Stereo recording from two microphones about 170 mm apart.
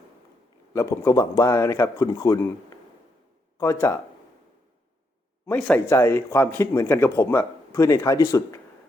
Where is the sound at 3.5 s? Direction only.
15° left (ahead or behind).